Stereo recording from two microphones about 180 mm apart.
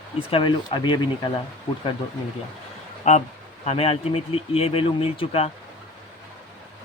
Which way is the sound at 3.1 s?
40° left (ahead or behind).